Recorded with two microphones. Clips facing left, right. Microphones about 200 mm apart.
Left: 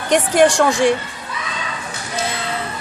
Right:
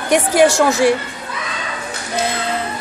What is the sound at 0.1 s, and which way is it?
Speech, 10° right (ahead or behind).